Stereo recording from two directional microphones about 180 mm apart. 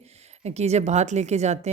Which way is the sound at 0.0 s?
35° right (ahead or behind).